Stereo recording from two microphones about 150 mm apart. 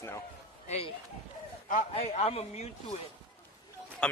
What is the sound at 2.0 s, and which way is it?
Speech, 45° left (ahead or behind).